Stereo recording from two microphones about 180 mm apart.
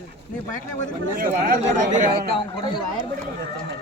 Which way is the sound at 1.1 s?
50° right (ahead or behind).